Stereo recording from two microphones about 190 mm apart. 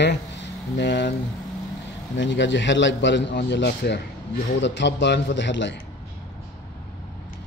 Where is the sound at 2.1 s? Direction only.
70° left (ahead or behind).